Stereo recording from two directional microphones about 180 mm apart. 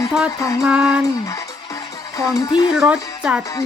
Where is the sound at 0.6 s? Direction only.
5° right (ahead or behind).